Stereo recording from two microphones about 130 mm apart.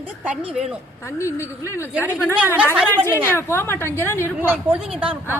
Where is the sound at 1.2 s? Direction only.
20° left (ahead or behind).